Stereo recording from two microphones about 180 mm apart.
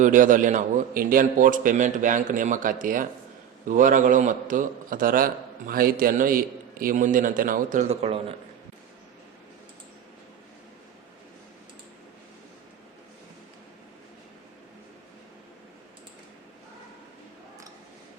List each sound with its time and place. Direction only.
0.0 s a man's voice: 45° right (ahead or behind)